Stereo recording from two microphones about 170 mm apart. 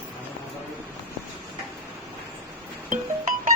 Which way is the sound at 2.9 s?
50° right (ahead or behind).